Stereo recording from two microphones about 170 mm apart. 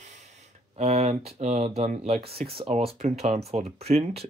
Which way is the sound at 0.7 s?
40° right (ahead or behind).